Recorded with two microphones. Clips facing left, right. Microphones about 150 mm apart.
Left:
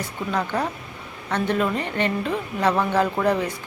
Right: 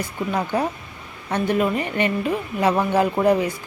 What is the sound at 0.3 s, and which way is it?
Speech, 10° right (ahead or behind).